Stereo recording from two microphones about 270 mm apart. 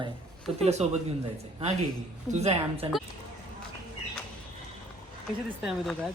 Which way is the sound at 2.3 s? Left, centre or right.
Right.